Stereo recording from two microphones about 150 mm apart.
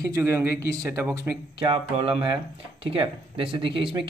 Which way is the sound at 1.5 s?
40° right (ahead or behind).